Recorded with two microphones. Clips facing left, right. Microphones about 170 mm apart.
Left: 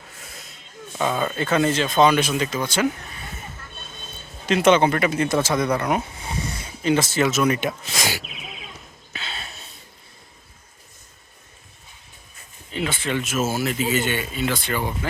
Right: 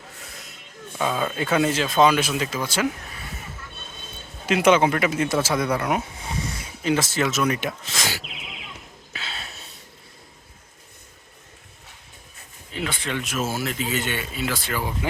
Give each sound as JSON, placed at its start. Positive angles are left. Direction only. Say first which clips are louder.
{"t": 0.9, "sound": "speech", "louder": "left 1 dB", "side_deg": 0}
{"t": 4.4, "sound": "speech", "louder": "left 1 dB", "side_deg": -10}
{"t": 7.9, "sound": "speech", "louder": "left 3 dB", "side_deg": 15}
{"t": 9.1, "sound": "a sound", "louder": "left 1 dB", "side_deg": 0}
{"t": 12.7, "sound": "speech", "louder": "left 3 dB", "side_deg": 5}